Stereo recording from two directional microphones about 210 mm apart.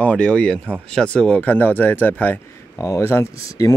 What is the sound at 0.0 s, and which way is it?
Speech, 5° left (ahead or behind).